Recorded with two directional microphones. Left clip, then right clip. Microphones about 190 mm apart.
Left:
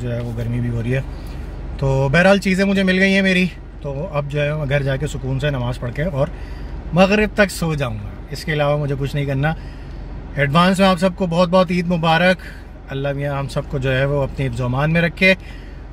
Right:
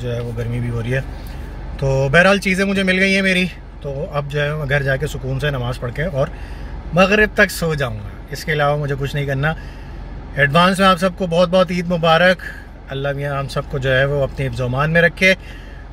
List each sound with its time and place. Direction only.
0.0 s speech: 5° left (ahead or behind)